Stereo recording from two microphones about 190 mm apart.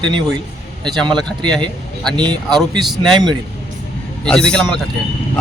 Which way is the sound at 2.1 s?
25° right (ahead or behind).